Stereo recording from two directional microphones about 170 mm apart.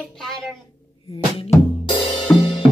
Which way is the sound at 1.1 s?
30° left (ahead or behind).